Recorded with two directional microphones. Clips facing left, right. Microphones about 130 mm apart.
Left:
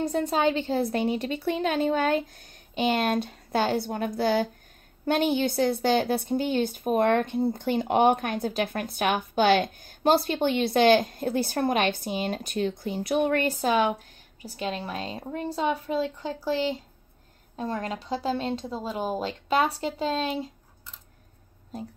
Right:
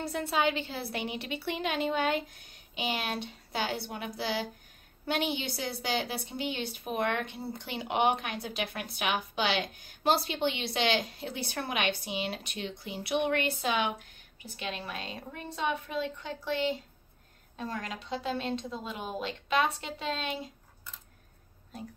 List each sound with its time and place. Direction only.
0.0 s a woman's voice: 45° left (ahead or behind)